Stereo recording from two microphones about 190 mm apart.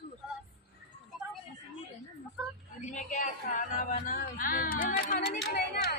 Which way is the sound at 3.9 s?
45° left (ahead or behind).